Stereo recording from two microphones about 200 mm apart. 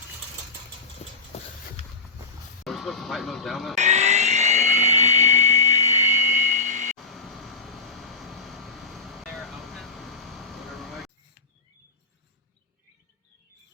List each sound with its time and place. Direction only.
1.0 s vehicle: 30° left (ahead or behind)
2.6 s speech: centre (ahead or behind)
3.8 s helicopter: 35° right (ahead or behind)
6.9 s vehicle: centre (ahead or behind)